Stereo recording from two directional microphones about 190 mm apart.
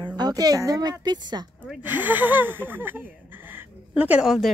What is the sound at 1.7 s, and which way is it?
A woman's voice, 10° right (ahead or behind).